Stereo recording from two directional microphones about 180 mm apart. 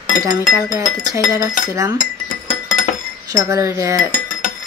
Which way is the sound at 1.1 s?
15° right (ahead or behind).